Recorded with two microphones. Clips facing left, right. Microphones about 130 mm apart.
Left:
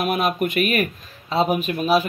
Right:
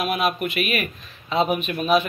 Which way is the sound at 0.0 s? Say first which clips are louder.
Left 2 dB; 45° left (ahead or behind).